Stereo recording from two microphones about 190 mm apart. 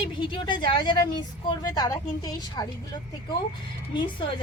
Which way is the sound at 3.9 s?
25° left (ahead or behind).